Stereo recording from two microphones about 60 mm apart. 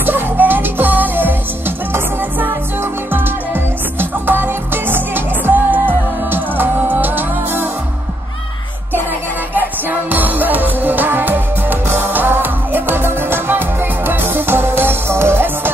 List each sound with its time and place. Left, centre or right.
0.0 s music: right
9.5 s music: right